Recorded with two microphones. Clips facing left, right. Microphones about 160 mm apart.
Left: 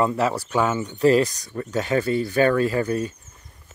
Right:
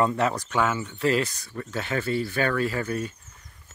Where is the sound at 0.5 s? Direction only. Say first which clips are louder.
Left 4 dB; 30° left (ahead or behind).